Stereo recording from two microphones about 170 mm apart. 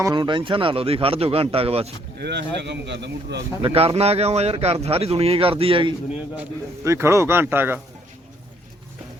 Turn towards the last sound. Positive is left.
turn(degrees=-10)  # may be behind; listen again after turning